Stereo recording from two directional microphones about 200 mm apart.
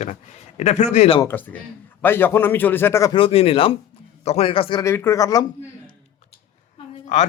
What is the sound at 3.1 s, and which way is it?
Speech, 25° left (ahead or behind).